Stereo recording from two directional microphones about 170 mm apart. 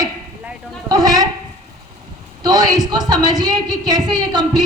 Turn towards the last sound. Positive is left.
turn(degrees=-25)  # may be behind; listen again after turning